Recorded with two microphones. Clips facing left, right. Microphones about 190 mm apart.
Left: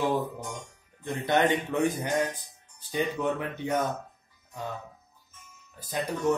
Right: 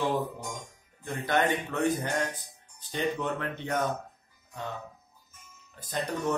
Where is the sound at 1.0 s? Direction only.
20° left (ahead or behind).